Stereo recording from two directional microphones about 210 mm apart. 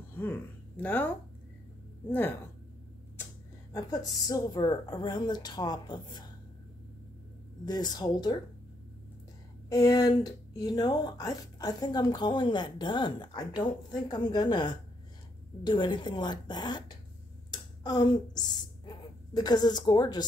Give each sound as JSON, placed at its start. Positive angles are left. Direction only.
{"t": 0.2, "sound": "speech", "side_deg": 10}
{"t": 3.7, "sound": "speech", "side_deg": 15}
{"t": 7.6, "sound": "speech", "side_deg": 20}
{"t": 9.7, "sound": "speech", "side_deg": 15}
{"t": 17.5, "sound": "a sound", "side_deg": 20}
{"t": 18.9, "sound": "speech", "side_deg": 20}